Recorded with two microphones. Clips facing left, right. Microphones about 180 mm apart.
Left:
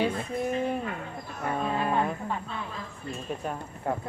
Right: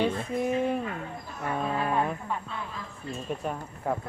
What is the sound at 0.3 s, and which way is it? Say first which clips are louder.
Speech: right 2 dB; 5° right (ahead or behind).